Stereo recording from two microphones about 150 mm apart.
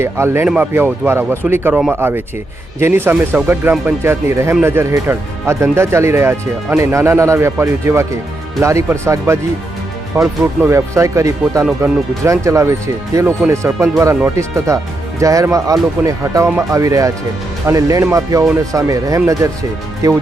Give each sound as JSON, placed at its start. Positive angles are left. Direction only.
{"t": 0.0, "sound": "speech", "side_deg": -15}